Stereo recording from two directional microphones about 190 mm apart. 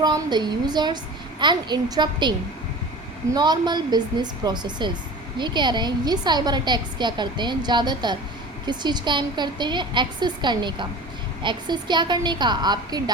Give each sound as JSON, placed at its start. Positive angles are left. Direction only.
{"t": 0.0, "sound": "a woman's voice", "side_deg": -20}
{"t": 3.3, "sound": "a woman's voice", "side_deg": -20}